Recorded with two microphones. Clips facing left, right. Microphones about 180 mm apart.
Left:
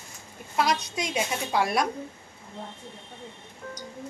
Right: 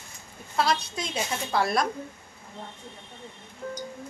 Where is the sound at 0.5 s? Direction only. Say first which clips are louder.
Even; 15° left (ahead or behind).